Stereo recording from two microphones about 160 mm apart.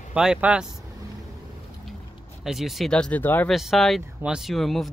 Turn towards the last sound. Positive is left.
turn(degrees=0)  # may be behind; listen again after turning